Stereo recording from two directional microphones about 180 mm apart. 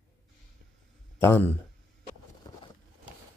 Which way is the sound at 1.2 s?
10° left (ahead or behind).